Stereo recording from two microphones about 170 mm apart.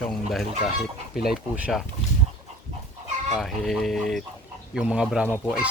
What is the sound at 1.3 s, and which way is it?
Speech, 5° right (ahead or behind).